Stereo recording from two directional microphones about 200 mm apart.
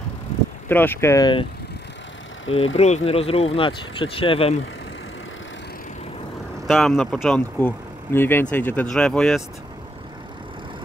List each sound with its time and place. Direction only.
0.7 s speech: 10° left (ahead or behind)
2.5 s speech: 30° left (ahead or behind)
6.7 s speech: centre (ahead or behind)